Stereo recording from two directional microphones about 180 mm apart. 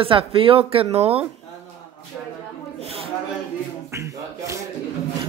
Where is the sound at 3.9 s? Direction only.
15° right (ahead or behind).